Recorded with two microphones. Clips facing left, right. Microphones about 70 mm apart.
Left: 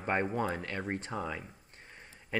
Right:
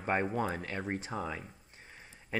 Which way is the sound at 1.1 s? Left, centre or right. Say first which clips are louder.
Left 1 dB; centre.